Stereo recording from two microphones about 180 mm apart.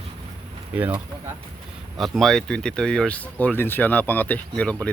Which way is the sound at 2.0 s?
Centre (ahead or behind).